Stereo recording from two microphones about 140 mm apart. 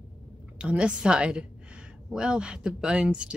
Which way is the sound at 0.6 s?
10° right (ahead or behind).